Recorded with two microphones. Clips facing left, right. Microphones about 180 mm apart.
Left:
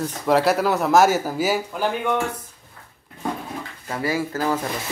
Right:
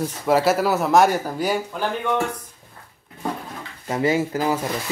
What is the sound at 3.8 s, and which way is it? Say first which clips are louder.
Speech: right 4 dB; 25° right (ahead or behind).